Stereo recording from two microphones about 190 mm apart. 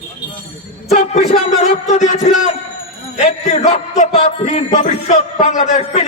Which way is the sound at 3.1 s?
35° left (ahead or behind).